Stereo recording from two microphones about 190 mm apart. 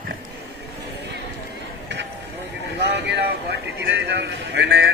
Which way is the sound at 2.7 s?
65° right (ahead or behind).